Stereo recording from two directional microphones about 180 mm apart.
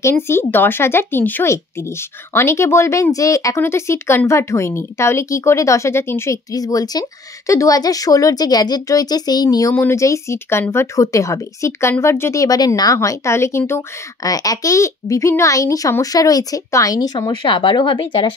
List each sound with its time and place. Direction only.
0.0 s speech: 15° left (ahead or behind)